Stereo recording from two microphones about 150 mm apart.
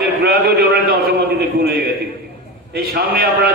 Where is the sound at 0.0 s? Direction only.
90° right.